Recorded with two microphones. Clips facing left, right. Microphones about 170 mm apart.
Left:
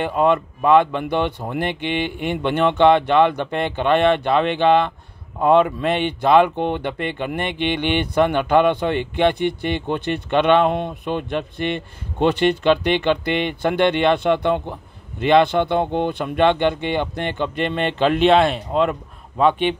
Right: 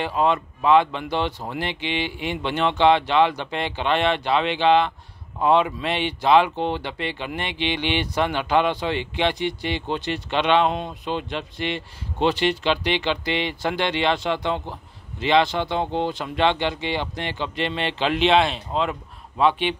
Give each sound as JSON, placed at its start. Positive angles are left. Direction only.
{"t": 0.0, "sound": "speech", "side_deg": 55}